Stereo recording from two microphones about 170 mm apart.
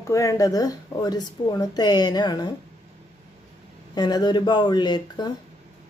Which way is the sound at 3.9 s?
25° left (ahead or behind).